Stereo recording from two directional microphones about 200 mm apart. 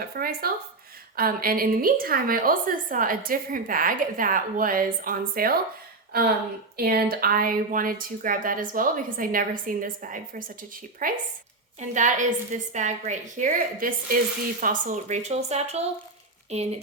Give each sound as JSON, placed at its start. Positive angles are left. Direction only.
{"t": 0.2, "sound": "a woman's voice", "side_deg": -50}
{"t": 6.7, "sound": "a woman's voice", "side_deg": -50}